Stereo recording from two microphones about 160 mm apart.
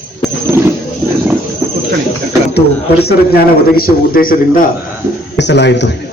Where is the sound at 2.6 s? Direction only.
85° left; by 4.6 s 65° left (ahead or behind).